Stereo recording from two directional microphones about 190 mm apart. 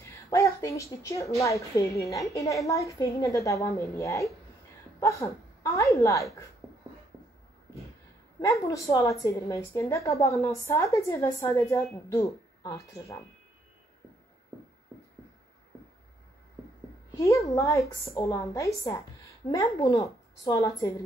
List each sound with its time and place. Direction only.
0.3 s a woman's voice: 15° left (ahead or behind)
8.4 s a woman's voice: 15° left (ahead or behind)
17.2 s a woman's voice: 15° left (ahead or behind)